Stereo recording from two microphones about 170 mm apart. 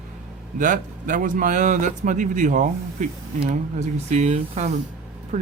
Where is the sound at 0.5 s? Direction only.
50° right (ahead or behind).